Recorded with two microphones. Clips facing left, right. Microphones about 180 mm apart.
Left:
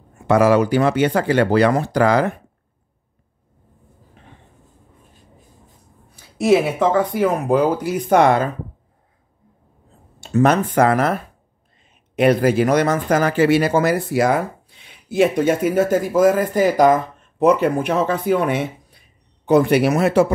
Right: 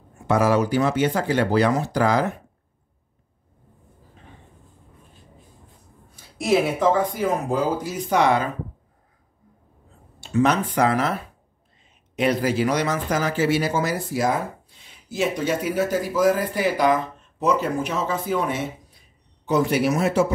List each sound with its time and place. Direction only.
0.3 s speech: 70° left (ahead or behind)
6.4 s speech: 60° left (ahead or behind)
10.3 s speech: 50° left (ahead or behind)
12.2 s speech: 55° left (ahead or behind)